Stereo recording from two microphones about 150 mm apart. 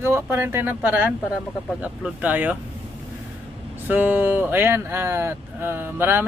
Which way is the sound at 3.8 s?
10° right (ahead or behind).